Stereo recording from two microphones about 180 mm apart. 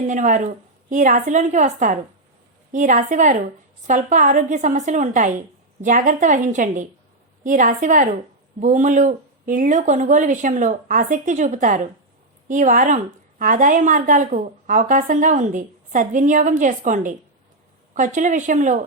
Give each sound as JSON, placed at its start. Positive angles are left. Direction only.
{"t": 0.1, "sound": "a woman's voice", "side_deg": -45}